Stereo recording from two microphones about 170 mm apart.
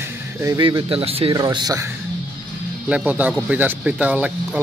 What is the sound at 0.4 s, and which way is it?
Speech, 20° right (ahead or behind).